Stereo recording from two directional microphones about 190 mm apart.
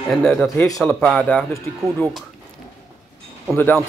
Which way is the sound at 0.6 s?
15° left (ahead or behind).